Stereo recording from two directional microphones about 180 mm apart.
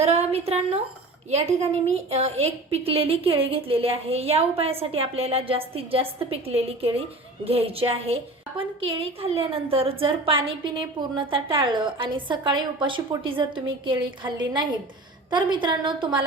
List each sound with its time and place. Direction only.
0.0 s a woman's voice: 35° right (ahead or behind)